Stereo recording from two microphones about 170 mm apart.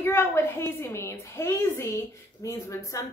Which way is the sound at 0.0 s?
15° left (ahead or behind).